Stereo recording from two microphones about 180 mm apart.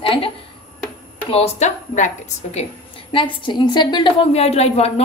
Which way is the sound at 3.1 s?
25° left (ahead or behind).